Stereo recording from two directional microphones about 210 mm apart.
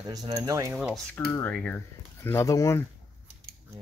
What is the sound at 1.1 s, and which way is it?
Speech, 10° left (ahead or behind).